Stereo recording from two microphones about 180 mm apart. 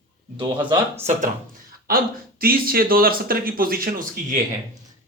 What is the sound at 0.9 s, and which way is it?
Speech, 45° right (ahead or behind).